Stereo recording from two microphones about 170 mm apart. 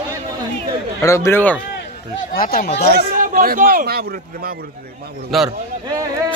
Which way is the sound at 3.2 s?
55° right (ahead or behind).